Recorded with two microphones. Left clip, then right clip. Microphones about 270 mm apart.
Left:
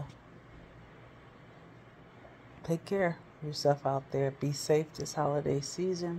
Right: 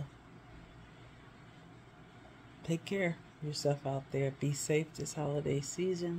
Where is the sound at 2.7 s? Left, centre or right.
Centre.